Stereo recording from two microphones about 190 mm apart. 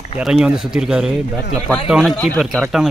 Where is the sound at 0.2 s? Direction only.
Centre (ahead or behind).